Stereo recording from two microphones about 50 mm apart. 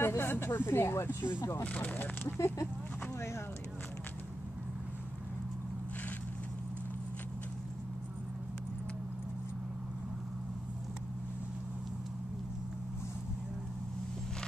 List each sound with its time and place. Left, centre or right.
0.0 s speech: left
1.6 s speech: left
2.2 s speech: left